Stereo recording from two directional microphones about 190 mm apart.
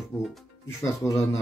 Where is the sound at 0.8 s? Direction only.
15° left (ahead or behind).